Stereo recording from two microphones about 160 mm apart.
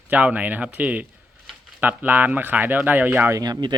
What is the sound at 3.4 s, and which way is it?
Speech, 25° right (ahead or behind).